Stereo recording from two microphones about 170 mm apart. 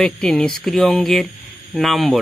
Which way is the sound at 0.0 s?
5° left (ahead or behind).